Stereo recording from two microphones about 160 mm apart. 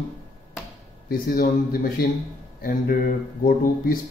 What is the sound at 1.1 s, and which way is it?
A man's voice, 70° left (ahead or behind).